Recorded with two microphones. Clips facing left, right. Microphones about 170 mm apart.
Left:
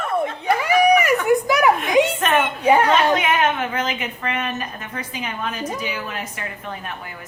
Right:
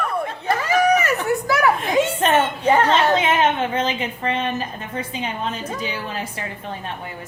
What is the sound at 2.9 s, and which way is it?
A woman's voice, 25° right (ahead or behind).